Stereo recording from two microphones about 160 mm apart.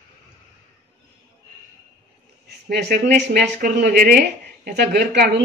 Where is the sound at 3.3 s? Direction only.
70° right (ahead or behind).